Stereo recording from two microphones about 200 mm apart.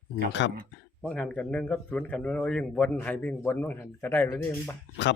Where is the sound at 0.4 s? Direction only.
65° left (ahead or behind).